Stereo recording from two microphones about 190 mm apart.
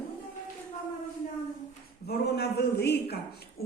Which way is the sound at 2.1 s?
60° left (ahead or behind).